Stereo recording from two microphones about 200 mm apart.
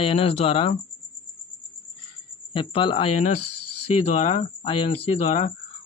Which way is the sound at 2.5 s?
25° left (ahead or behind).